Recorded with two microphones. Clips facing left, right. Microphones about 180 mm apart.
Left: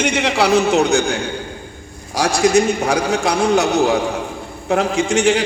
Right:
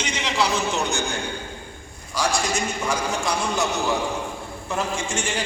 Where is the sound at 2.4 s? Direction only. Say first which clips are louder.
Left 11 dB; 70° left (ahead or behind).